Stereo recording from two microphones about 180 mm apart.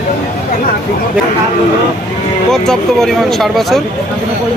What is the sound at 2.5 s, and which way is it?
Speech, 5° left (ahead or behind).